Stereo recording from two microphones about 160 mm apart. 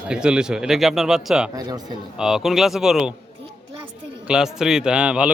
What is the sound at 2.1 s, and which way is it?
A man's voice, 5° right (ahead or behind).